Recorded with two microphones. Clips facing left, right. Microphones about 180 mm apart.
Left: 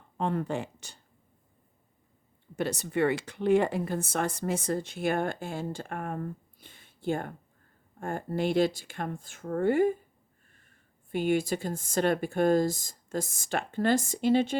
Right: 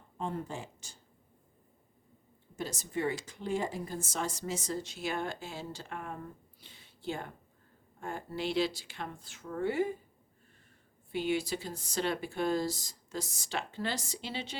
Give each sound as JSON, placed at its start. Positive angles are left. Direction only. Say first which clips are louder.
{"t": 0.2, "sound": "speech", "louder": "left 7 dB", "side_deg": 70}
{"t": 2.6, "sound": "speech", "louder": "left 8 dB", "side_deg": 65}
{"t": 11.1, "sound": "speech", "louder": "left 5 dB", "side_deg": 50}